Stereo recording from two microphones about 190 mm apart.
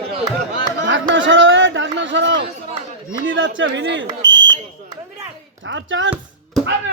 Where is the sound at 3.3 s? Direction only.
80° right.